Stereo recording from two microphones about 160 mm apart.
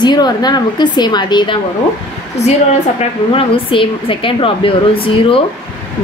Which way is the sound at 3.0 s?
35° left (ahead or behind).